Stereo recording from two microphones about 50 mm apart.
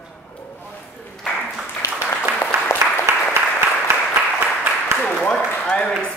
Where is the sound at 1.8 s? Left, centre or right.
Left.